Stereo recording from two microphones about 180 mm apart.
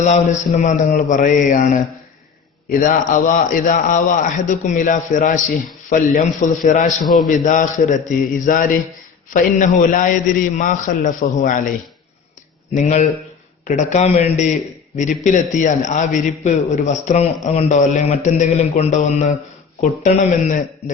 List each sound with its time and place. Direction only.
0.0 s a man's voice: 40° left (ahead or behind)
2.8 s a man's voice: 45° left (ahead or behind)
12.7 s a man's voice: 45° left (ahead or behind)